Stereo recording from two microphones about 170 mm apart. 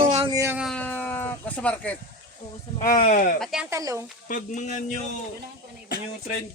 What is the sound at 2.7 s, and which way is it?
Speech, 55° left (ahead or behind).